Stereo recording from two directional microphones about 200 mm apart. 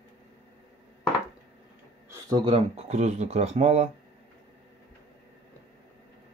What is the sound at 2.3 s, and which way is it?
Speech, 25° right (ahead or behind).